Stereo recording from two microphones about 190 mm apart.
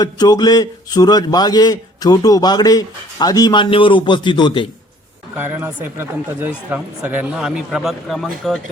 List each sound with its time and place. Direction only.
0.0 s a man's voice: 20° left (ahead or behind)
5.4 s speech: 10° right (ahead or behind)